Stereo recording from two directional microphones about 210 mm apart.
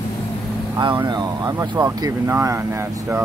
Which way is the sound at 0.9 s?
20° right (ahead or behind).